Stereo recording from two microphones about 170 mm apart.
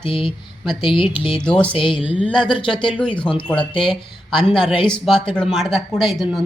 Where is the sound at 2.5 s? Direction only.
30° left (ahead or behind).